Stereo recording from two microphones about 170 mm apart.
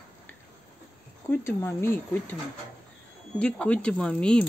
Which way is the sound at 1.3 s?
15° left (ahead or behind).